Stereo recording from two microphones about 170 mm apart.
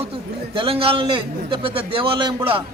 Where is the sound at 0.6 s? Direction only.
35° right (ahead or behind).